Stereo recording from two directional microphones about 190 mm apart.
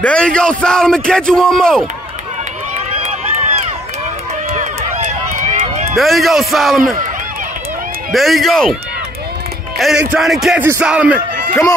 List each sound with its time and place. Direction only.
0.0 s a man's voice: 5° left (ahead or behind)
4.5 s run: 40° right (ahead or behind)
5.9 s a man's voice: centre (ahead or behind)
8.1 s a man's voice: centre (ahead or behind)
9.8 s a man's voice: centre (ahead or behind)